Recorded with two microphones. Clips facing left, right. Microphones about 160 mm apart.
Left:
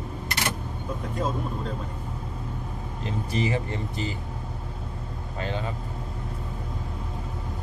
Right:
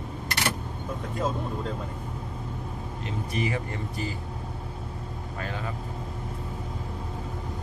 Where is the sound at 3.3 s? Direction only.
25° left (ahead or behind).